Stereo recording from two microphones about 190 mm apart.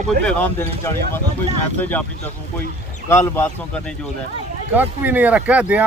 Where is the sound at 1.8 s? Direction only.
10° left (ahead or behind).